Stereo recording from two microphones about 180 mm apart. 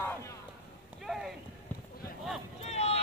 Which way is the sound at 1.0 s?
Centre (ahead or behind).